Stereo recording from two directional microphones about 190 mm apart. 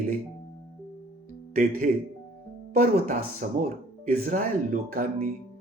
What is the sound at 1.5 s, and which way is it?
Speech, 50° right (ahead or behind).